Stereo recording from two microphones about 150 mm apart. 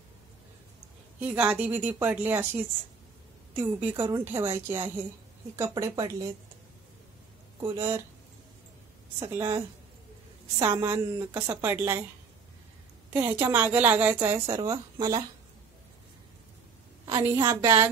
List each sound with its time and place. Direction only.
1.2 s a woman's voice: 10° right (ahead or behind)
7.6 s a woman's voice: 20° right (ahead or behind)
9.3 s a woman's voice: 20° right (ahead or behind)
10.6 s a woman's voice: 15° right (ahead or behind)
13.2 s a woman's voice: 15° right (ahead or behind)
17.0 s a woman's voice: 20° right (ahead or behind)